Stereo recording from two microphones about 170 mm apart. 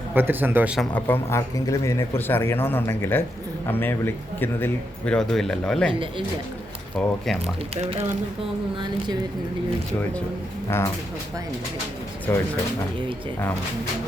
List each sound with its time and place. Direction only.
0.1 s speech: 10° right (ahead or behind)
0.9 s a man's voice: 10° left (ahead or behind)
5.9 s speech: 30° right (ahead or behind)
7.0 s speech: 5° left (ahead or behind)
10.7 s a man's voice: 15° left (ahead or behind)
12.3 s a man's voice: 15° left (ahead or behind)